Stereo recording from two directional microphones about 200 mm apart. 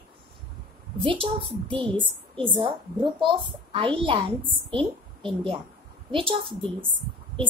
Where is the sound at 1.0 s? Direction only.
25° right (ahead or behind).